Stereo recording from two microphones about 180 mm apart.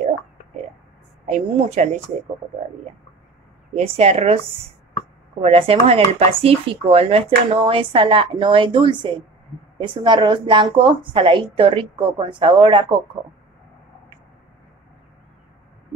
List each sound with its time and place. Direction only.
1.2 s speech: 40° right (ahead or behind)
3.7 s speech: 35° right (ahead or behind)
5.4 s speech: 35° right (ahead or behind)